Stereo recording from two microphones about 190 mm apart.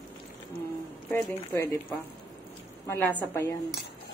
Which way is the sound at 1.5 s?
15° left (ahead or behind).